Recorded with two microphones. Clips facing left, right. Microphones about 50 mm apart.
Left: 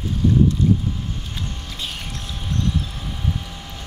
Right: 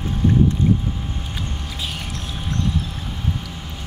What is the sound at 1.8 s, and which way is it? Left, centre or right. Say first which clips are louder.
Boat: right 1 dB; centre.